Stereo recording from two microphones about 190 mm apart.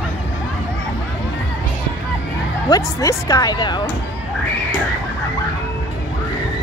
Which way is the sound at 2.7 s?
15° left (ahead or behind).